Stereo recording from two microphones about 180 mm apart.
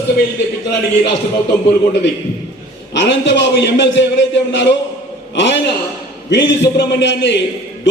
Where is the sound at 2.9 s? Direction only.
75° left (ahead or behind).